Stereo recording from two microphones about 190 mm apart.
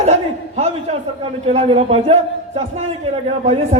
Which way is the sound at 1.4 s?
35° right (ahead or behind).